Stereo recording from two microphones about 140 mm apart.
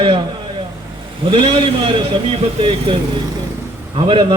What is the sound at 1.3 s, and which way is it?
A man's voice, 40° right (ahead or behind).